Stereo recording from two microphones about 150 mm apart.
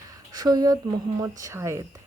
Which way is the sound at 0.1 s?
25° right (ahead or behind).